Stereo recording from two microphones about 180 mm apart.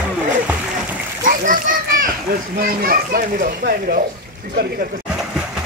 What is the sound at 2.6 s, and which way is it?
Speech, 55° right (ahead or behind).